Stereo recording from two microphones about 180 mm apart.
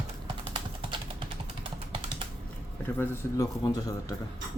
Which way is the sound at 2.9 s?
20° left (ahead or behind).